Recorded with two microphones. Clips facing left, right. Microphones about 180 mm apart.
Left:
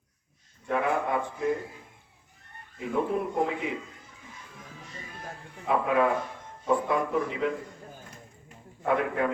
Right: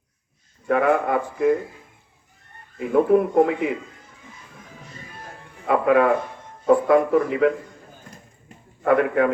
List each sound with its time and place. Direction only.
0.7 s a man's voice: 60° right (ahead or behind)
2.9 s a man's voice: 65° right (ahead or behind)
5.6 s a man's voice: 65° right (ahead or behind)
8.8 s a man's voice: 65° right (ahead or behind)